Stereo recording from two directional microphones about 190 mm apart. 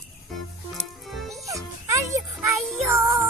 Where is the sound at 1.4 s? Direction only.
15° right (ahead or behind).